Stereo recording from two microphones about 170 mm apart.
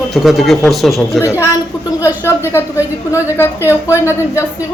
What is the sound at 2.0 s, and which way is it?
Speech, 10° right (ahead or behind).